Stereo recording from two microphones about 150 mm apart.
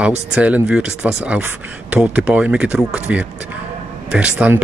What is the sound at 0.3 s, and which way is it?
Speech, 10° right (ahead or behind).